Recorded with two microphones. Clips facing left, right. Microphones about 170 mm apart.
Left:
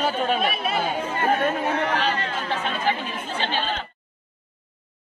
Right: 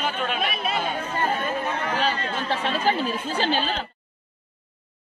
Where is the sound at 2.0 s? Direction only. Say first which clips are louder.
Even; 35° right (ahead or behind).